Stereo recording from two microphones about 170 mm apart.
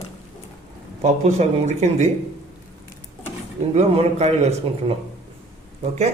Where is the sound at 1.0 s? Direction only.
40° right (ahead or behind).